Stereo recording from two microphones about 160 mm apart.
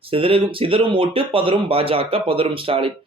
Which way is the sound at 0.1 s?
35° right (ahead or behind).